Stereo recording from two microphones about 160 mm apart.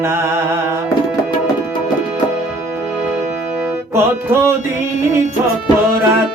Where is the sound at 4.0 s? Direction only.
15° right (ahead or behind).